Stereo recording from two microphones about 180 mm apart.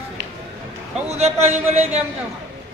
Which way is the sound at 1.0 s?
35° right (ahead or behind).